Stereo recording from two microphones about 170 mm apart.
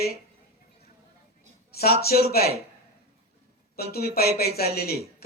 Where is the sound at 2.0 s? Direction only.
65° left (ahead or behind).